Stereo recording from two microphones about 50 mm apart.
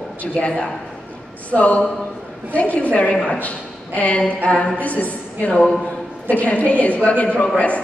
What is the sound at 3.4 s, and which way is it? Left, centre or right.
A man's voice, left.